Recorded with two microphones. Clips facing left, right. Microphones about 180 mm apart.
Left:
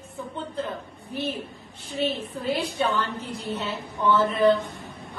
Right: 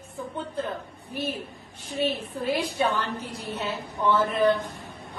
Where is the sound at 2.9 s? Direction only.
35° right (ahead or behind).